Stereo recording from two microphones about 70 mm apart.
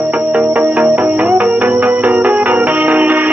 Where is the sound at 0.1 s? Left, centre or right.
Right.